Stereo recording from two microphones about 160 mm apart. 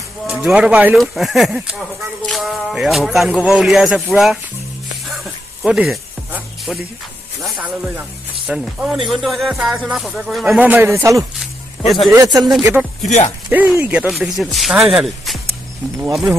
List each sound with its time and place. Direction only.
0.3 s speech: 5° right (ahead or behind)
5.0 s music: centre (ahead or behind)
7.4 s speech: 10° right (ahead or behind)
13.5 s speech: 10° right (ahead or behind)